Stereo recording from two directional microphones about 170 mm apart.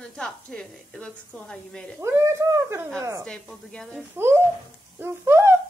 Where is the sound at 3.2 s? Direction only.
5° left (ahead or behind).